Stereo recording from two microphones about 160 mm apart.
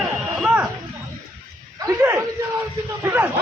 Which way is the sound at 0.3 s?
5° right (ahead or behind).